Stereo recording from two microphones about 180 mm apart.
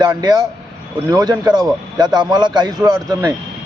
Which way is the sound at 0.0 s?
20° right (ahead or behind).